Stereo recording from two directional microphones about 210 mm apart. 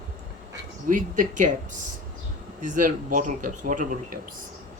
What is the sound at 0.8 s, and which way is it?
Speech, 40° right (ahead or behind).